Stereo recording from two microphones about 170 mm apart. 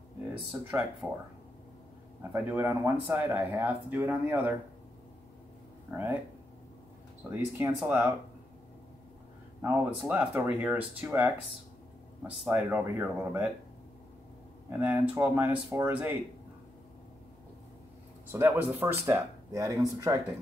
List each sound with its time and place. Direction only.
0.3 s speech: 10° right (ahead or behind)
2.3 s speech: 10° right (ahead or behind)
5.9 s speech: 10° right (ahead or behind)
7.2 s speech: 15° right (ahead or behind)
9.6 s speech: 10° right (ahead or behind)
14.7 s speech: 10° right (ahead or behind)
18.3 s speech: 10° right (ahead or behind)